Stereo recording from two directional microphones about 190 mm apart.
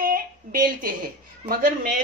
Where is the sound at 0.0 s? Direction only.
50° right (ahead or behind).